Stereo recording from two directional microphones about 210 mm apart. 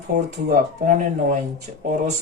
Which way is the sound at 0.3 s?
35° right (ahead or behind).